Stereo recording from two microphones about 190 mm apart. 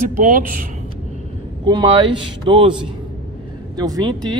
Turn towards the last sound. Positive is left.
turn(degrees=-20)  # may be behind; listen again after turning